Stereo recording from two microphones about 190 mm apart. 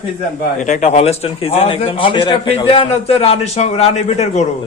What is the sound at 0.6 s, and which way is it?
A man's voice, 40° left (ahead or behind).